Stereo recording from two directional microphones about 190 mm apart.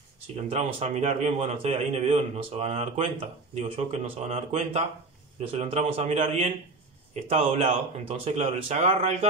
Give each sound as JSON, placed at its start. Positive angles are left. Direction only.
{"t": 0.5, "sound": "a man's voice", "side_deg": -35}